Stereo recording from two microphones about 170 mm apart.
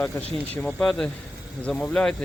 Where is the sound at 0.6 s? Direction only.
5° left (ahead or behind).